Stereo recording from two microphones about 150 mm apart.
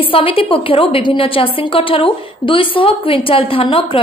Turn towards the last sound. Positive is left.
turn(degrees=35)  # may be behind; listen again after turning